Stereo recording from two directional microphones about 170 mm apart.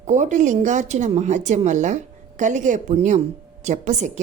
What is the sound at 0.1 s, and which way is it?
A woman's voice, 45° right (ahead or behind).